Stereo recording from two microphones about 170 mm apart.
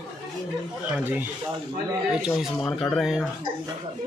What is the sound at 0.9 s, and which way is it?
Speech, 10° right (ahead or behind).